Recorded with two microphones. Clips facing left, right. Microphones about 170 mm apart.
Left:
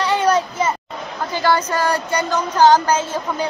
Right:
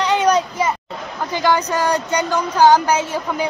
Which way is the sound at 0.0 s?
15° right (ahead or behind).